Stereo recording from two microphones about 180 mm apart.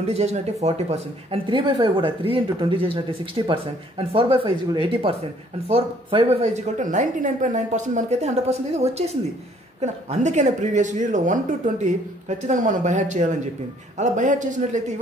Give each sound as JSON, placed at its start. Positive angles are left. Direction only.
{"t": 0.0, "sound": "a woman's voice", "side_deg": -35}
{"t": 6.4, "sound": "a woman's voice", "side_deg": -40}